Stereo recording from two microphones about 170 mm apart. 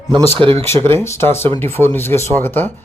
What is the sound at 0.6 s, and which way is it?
Speech, 15° left (ahead or behind).